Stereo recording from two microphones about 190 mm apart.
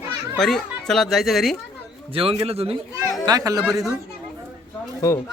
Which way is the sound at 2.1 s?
30° right (ahead or behind).